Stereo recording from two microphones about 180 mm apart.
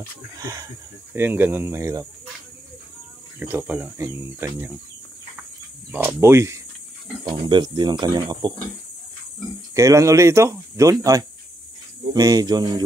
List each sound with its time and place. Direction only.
0.4 s speech: 20° right (ahead or behind)
3.3 s speech: 10° right (ahead or behind)
5.9 s speech: 10° right (ahead or behind)
9.8 s speech: 15° right (ahead or behind)